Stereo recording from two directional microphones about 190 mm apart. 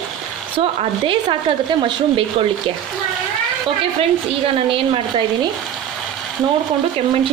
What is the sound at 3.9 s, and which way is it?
Speech, 30° right (ahead or behind).